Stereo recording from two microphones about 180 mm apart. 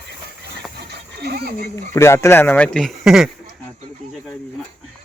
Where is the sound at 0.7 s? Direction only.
65° right (ahead or behind).